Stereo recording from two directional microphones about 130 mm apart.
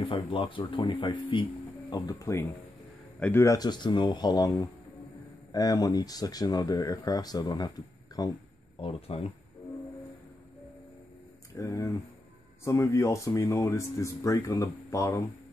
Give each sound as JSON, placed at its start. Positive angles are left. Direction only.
{"t": 0.1, "sound": "speech", "side_deg": 40}
{"t": 3.5, "sound": "speech", "side_deg": 35}
{"t": 5.5, "sound": "speech", "side_deg": 30}
{"t": 8.8, "sound": "speech", "side_deg": 50}
{"t": 11.5, "sound": "speech", "side_deg": 25}